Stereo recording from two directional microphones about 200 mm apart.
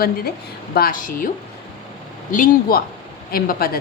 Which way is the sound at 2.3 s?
45° left (ahead or behind).